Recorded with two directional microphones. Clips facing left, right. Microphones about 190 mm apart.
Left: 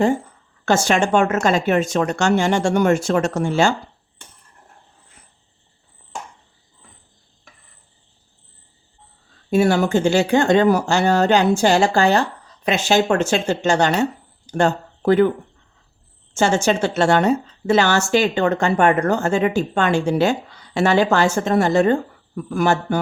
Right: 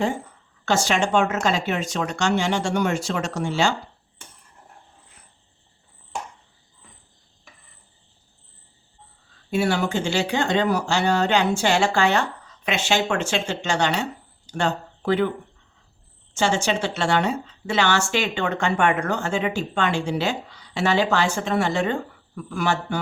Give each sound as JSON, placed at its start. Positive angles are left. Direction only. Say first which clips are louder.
{"t": 0.6, "sound": "a woman's voice", "louder": "left 4 dB", "side_deg": 50}
{"t": 9.5, "sound": "a woman's voice", "louder": "left 6 dB", "side_deg": 45}
{"t": 16.3, "sound": "a woman's voice", "louder": "left 5 dB", "side_deg": 45}